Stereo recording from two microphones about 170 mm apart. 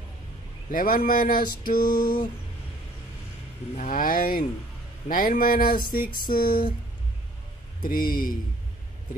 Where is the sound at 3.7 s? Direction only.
50° left (ahead or behind).